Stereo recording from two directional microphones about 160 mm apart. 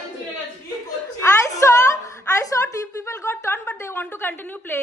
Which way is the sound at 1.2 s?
20° left (ahead or behind).